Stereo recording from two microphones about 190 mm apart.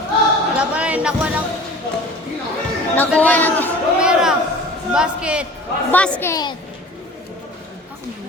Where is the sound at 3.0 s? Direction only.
10° left (ahead or behind).